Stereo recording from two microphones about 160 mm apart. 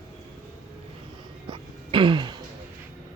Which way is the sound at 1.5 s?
30° right (ahead or behind).